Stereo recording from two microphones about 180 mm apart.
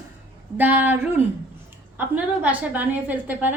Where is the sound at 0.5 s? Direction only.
10° right (ahead or behind).